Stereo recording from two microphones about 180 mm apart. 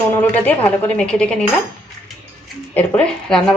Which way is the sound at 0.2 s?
10° left (ahead or behind).